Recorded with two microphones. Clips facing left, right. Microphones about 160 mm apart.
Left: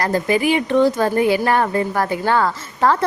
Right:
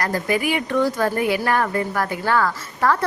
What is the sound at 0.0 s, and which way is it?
Speech, 25° left (ahead or behind).